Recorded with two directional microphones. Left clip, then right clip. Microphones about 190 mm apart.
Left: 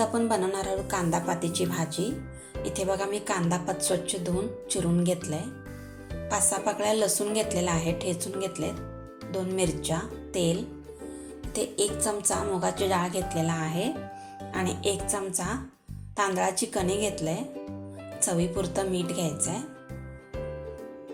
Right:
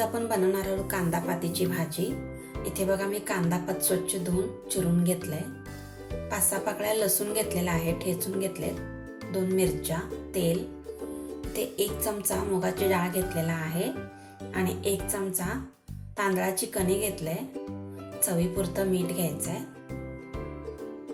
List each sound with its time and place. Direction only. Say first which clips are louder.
0.0 s speech: left 1 dB; 20° left (ahead or behind)
11.5 s speech: left 2 dB; 20° left (ahead or behind)
16.1 s speech: left 2 dB; 25° left (ahead or behind)